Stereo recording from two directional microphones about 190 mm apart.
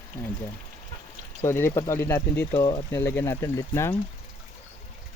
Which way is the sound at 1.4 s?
15° left (ahead or behind).